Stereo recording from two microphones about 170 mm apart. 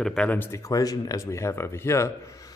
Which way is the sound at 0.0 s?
5° left (ahead or behind).